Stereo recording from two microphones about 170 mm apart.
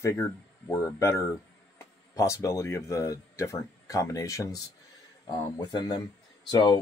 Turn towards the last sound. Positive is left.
turn(degrees=25)  # may be behind; listen again after turning